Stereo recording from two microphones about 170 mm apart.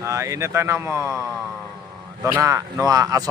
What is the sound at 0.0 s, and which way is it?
Speech, 20° right (ahead or behind).